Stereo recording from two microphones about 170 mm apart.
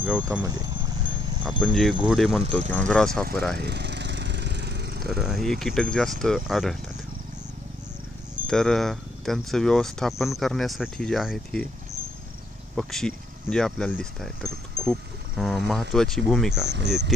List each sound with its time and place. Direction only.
0.0 s speech: 5° right (ahead or behind)
0.5 s a sound: 25° right (ahead or behind)
1.4 s speech: centre (ahead or behind)
3.5 s lawn mower: 80° right
5.0 s speech: centre (ahead or behind)
8.5 s speech: 5° left (ahead or behind)
12.7 s speech: 5° left (ahead or behind)
16.6 s speech: 90° right